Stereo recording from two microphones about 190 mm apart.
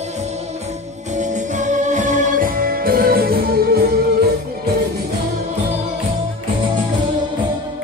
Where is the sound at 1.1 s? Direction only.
40° right (ahead or behind).